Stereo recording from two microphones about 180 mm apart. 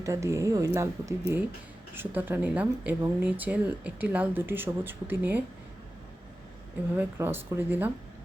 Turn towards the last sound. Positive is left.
turn(degrees=-10)  # may be behind; listen again after turning